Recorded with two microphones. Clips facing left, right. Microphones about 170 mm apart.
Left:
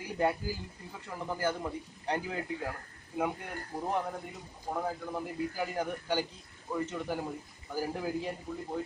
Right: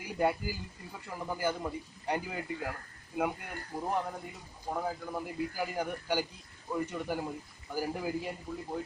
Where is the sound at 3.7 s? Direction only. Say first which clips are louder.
Even; 20° left (ahead or behind).